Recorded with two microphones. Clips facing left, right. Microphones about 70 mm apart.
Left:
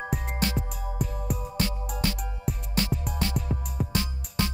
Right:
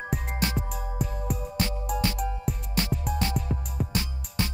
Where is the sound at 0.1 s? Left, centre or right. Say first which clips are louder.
Right 1 dB; centre.